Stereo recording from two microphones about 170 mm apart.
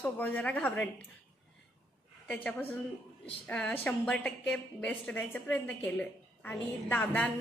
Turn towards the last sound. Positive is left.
turn(degrees=10)  # may be behind; listen again after turning